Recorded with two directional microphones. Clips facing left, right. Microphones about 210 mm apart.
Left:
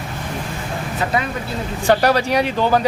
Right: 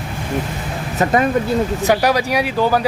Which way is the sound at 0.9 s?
45° right (ahead or behind).